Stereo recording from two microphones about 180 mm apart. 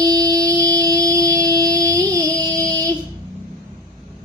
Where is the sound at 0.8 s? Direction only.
20° right (ahead or behind).